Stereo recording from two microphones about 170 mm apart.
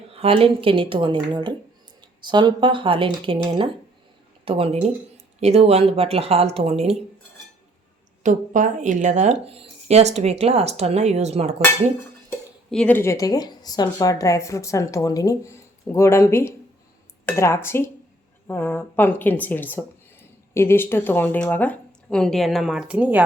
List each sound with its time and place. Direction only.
0.1 s speech: 35° right (ahead or behind)
4.4 s speech: 35° right (ahead or behind)
8.2 s speech: 50° right (ahead or behind)
12.7 s a woman's voice: 10° left (ahead or behind); by 23.2 s 10° right (ahead or behind)